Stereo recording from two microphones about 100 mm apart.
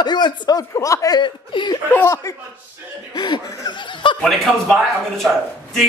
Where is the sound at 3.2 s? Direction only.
50° left (ahead or behind).